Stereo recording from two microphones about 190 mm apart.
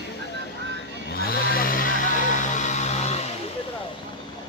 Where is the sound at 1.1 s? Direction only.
55° left (ahead or behind); by 3.2 s 35° left (ahead or behind).